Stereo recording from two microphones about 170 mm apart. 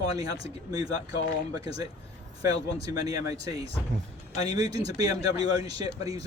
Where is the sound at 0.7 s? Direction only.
20° right (ahead or behind).